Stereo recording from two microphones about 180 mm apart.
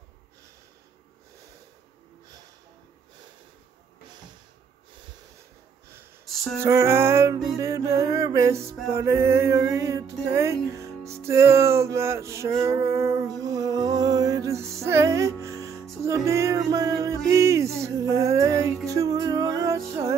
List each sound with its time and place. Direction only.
6.2 s music: centre (ahead or behind)
6.6 s music: 15° right (ahead or behind)